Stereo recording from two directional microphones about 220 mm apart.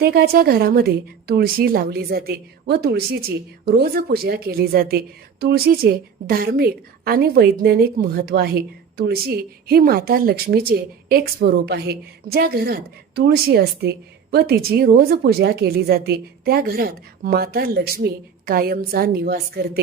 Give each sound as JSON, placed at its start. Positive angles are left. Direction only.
{"t": 0.0, "sound": "a woman's voice", "side_deg": -45}